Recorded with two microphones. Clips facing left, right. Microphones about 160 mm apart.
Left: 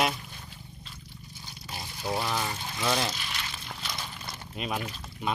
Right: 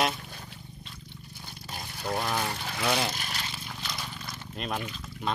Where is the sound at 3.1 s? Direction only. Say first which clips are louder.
Right 1 dB; 45° right (ahead or behind).